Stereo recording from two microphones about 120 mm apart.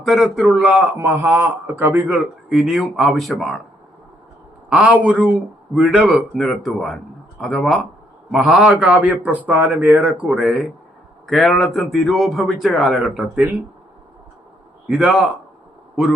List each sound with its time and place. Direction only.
0.0 s a man's voice: centre (ahead or behind)
0.5 s a man's voice: 15° right (ahead or behind)
2.5 s a man's voice: centre (ahead or behind)
4.7 s a man's voice: 10° right (ahead or behind)
14.8 s a man's voice: 10° right (ahead or behind)